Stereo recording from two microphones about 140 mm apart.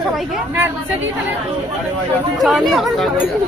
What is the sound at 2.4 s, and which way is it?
Speech, centre (ahead or behind).